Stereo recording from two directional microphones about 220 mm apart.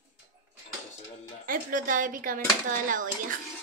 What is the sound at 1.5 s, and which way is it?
Speech, 40° right (ahead or behind).